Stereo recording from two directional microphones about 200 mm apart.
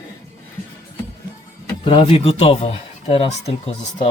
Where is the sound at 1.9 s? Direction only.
25° left (ahead or behind).